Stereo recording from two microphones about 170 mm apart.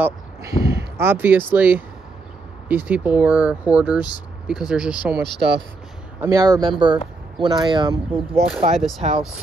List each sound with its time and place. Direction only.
0.0 s speech: 15° right (ahead or behind)
6.2 s speech: 20° right (ahead or behind)
8.7 s speech: centre (ahead or behind)